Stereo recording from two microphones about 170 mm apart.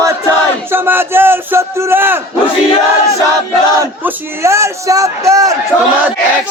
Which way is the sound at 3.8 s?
15° right (ahead or behind).